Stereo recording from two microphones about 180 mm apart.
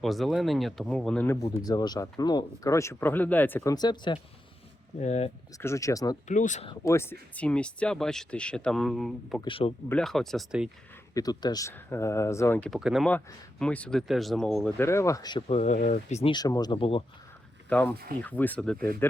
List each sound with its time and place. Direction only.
0.0 s speech: centre (ahead or behind); by 4.2 s 25° left (ahead or behind)
4.9 s speech: 35° left (ahead or behind)
5.5 s speech: 15° left (ahead or behind)
6.2 s speech: 45° left (ahead or behind)
6.8 s speech: 15° left (ahead or behind)
9.4 s speech: 30° left (ahead or behind)
9.9 s speech: centre (ahead or behind)
11.1 s speech: 20° left (ahead or behind); by 14.7 s 5° left (ahead or behind)
14.8 s speech: 15° left (ahead or behind)
15.5 s speech: 45° left (ahead or behind)
16.3 s speech: 20° left (ahead or behind)
17.7 s speech: 10° left (ahead or behind)
17.9 s speech: 55° right (ahead or behind)
18.2 s speech: 10° left (ahead or behind)